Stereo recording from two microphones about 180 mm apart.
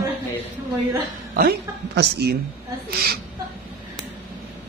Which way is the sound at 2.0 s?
65° right (ahead or behind).